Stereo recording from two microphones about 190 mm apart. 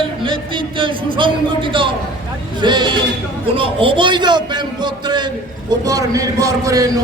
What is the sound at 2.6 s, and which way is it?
A man's voice, 25° right (ahead or behind).